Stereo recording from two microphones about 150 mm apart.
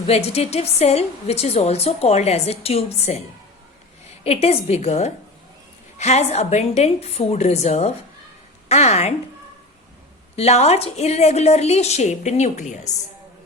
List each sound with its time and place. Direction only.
0.0 s a woman's voice: 45° left (ahead or behind)
4.2 s a woman's voice: 45° left (ahead or behind)
10.3 s a woman's voice: 45° left (ahead or behind)